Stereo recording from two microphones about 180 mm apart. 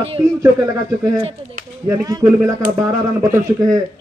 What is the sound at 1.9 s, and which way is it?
A man's voice, 20° right (ahead or behind).